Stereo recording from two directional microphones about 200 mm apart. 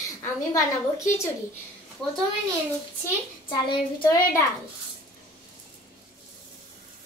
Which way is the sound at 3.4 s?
25° left (ahead or behind).